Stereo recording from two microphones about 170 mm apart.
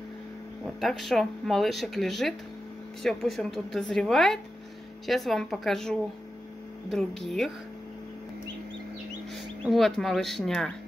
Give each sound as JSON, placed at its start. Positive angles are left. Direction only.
{"t": 0.7, "sound": "speech", "side_deg": 0}
{"t": 9.7, "sound": "speech", "side_deg": 0}